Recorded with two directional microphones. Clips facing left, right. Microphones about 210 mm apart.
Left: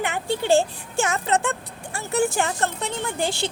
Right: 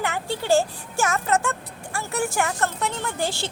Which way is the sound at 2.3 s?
30° left (ahead or behind).